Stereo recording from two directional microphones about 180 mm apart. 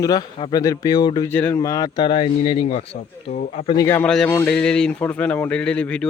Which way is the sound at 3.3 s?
50° left (ahead or behind).